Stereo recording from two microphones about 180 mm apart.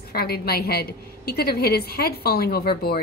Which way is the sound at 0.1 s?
60° left (ahead or behind).